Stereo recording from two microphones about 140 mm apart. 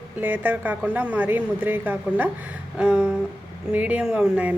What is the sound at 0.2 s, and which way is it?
Speech, 10° right (ahead or behind).